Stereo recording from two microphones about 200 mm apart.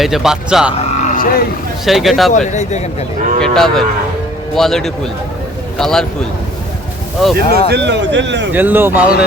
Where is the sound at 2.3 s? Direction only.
35° left (ahead or behind).